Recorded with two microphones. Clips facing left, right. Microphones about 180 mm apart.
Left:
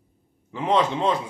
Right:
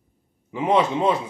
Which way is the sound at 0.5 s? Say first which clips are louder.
Right 2 dB; 10° right (ahead or behind).